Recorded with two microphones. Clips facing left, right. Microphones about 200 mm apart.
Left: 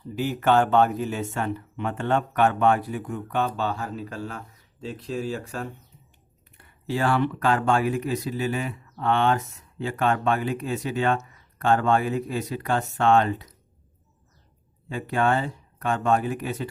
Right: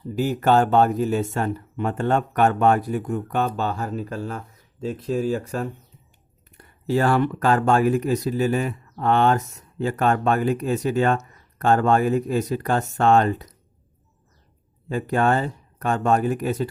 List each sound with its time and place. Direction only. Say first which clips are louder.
0.2 s speech: right 2 dB; 40° right (ahead or behind)
14.8 s speech: right 3 dB; 45° right (ahead or behind)